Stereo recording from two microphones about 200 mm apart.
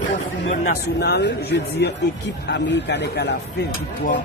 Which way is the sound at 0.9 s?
55° left (ahead or behind).